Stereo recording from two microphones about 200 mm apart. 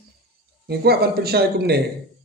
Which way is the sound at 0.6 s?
50° right (ahead or behind).